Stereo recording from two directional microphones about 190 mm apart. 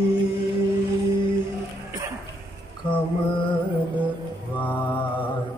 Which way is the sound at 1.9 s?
15° right (ahead or behind).